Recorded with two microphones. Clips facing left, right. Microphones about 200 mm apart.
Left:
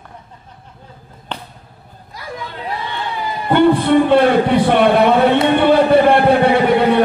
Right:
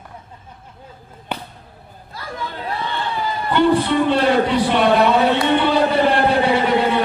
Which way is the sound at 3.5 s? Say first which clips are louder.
Left 5 dB; 55° left (ahead or behind).